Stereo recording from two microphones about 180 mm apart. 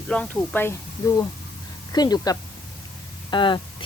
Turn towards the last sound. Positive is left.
turn(degrees=25)  # may be behind; listen again after turning